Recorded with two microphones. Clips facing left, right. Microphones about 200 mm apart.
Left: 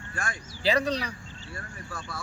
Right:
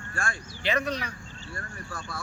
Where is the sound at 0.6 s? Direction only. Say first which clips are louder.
Left 3 dB; 35° left (ahead or behind).